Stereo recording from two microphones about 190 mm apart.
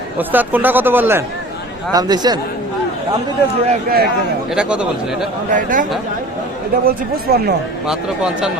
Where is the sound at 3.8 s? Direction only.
55° right (ahead or behind).